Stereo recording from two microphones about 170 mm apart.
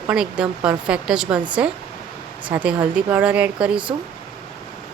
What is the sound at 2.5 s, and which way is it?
Speech, 10° right (ahead or behind).